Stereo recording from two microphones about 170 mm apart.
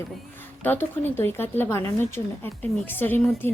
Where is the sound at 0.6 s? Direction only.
10° left (ahead or behind).